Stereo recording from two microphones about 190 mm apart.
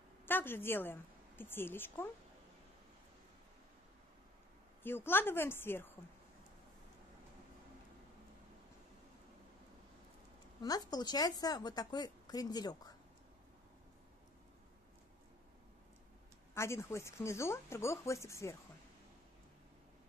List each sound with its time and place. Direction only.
0.2 s a woman's voice: 10° left (ahead or behind)
4.8 s speech: 10° left (ahead or behind)
10.6 s speech: 20° left (ahead or behind)
16.5 s speech: 15° left (ahead or behind)